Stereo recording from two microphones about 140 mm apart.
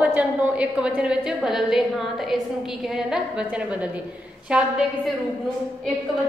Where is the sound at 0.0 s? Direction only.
10° right (ahead or behind).